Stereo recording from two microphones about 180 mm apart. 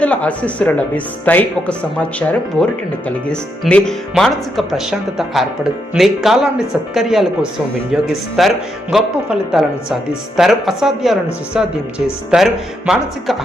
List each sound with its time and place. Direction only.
0.0 s speech: 5° left (ahead or behind)
8.4 s speech: centre (ahead or behind)